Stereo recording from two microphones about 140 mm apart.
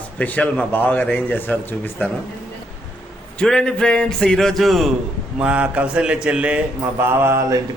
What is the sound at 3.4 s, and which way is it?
A man's voice, 5° left (ahead or behind).